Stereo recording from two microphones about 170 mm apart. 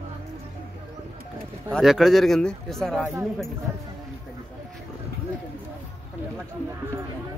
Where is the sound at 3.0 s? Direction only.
15° right (ahead or behind).